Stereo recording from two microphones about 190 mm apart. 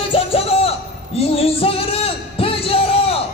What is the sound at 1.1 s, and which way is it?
Music, 30° left (ahead or behind).